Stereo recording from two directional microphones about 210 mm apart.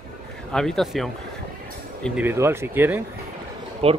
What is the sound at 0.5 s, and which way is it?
Speech, centre (ahead or behind).